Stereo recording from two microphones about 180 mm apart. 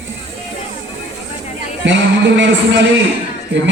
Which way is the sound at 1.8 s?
90° right.